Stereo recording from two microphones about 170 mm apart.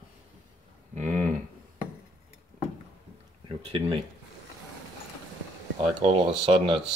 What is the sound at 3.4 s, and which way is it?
Speech, 30° right (ahead or behind).